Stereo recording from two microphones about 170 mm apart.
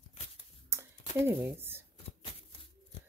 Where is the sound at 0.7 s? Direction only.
15° right (ahead or behind).